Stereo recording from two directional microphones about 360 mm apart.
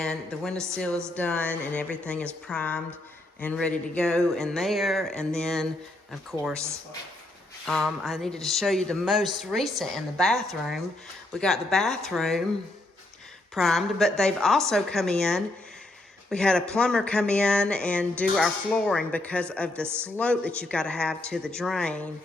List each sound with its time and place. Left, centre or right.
0.0 s speech: centre
7.7 s speech: centre
13.5 s speech: centre